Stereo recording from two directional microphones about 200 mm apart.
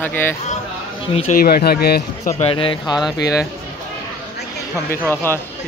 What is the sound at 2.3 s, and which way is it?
Speech, 30° left (ahead or behind).